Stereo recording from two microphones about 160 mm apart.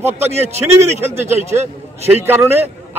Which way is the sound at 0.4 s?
15° right (ahead or behind).